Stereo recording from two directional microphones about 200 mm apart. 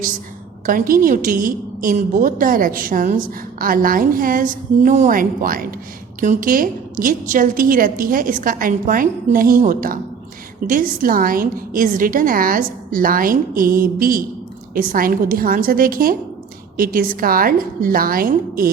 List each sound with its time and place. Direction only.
0.6 s a woman's voice: 45° right (ahead or behind)